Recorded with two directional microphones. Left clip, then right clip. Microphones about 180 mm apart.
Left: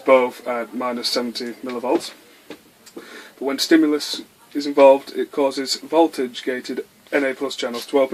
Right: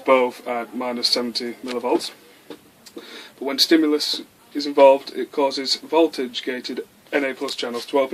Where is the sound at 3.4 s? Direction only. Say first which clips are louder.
Left 1 dB; 40° left (ahead or behind).